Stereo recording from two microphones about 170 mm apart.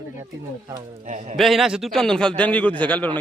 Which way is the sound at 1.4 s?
Centre (ahead or behind).